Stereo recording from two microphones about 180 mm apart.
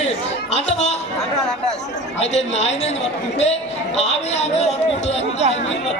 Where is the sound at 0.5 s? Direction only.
35° left (ahead or behind).